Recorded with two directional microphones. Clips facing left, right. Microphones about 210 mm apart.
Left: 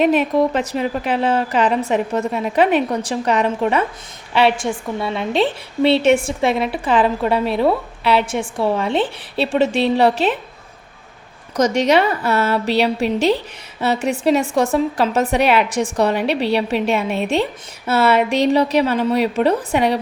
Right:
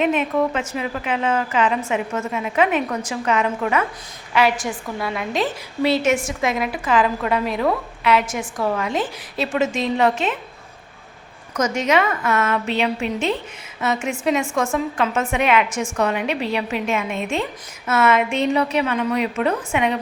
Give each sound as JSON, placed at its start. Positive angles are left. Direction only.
{"t": 0.0, "sound": "a woman's voice", "side_deg": 35}
{"t": 11.5, "sound": "a woman's voice", "side_deg": 35}